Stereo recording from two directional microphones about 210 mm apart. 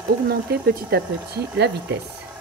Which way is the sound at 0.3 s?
45° right (ahead or behind).